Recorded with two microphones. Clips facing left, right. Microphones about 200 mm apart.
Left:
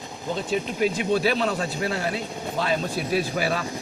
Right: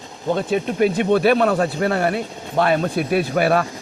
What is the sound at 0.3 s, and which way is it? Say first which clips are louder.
Speech: right 6 dB; 55° right (ahead or behind).